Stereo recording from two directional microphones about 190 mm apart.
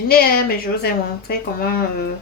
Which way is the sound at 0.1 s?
55° left (ahead or behind).